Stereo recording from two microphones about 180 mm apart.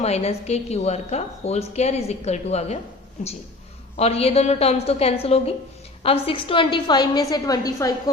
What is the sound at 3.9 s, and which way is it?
A woman's voice, 35° left (ahead or behind).